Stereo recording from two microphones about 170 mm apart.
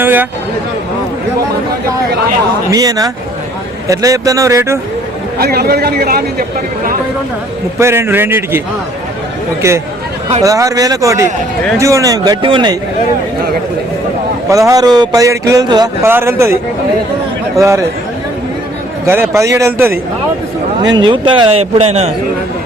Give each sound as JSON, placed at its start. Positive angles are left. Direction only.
{"t": 0.0, "sound": "speech", "side_deg": -10}
{"t": 2.6, "sound": "speech", "side_deg": -20}
{"t": 5.4, "sound": "speech", "side_deg": -65}
{"t": 7.8, "sound": "a man's voice", "side_deg": -15}
{"t": 14.5, "sound": "a man's voice", "side_deg": -20}
{"t": 17.6, "sound": "a man's voice", "side_deg": -15}
{"t": 19.0, "sound": "a man's voice", "side_deg": -15}